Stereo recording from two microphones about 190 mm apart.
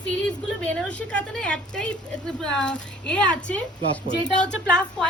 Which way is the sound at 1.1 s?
5° left (ahead or behind).